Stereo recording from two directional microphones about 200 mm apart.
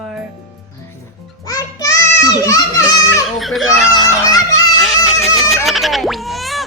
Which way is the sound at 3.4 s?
Centre (ahead or behind).